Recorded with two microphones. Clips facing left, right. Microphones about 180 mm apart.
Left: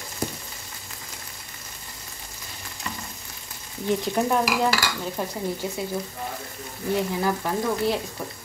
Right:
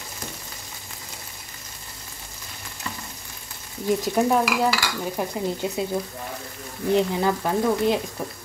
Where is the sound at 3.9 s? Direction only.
10° right (ahead or behind).